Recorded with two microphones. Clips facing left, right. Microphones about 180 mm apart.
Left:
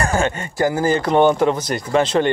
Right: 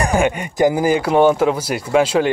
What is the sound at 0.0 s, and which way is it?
Speech, 15° right (ahead or behind).